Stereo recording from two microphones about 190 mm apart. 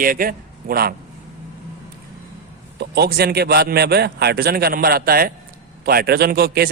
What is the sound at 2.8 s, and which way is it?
A man's voice, 55° right (ahead or behind).